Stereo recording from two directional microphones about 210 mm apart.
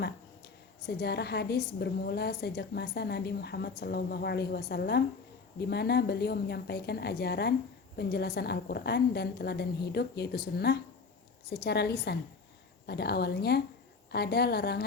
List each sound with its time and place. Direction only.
0.0 s a woman's voice: 50° left (ahead or behind)